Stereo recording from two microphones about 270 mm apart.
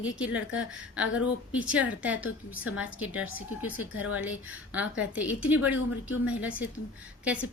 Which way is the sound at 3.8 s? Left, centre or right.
Left.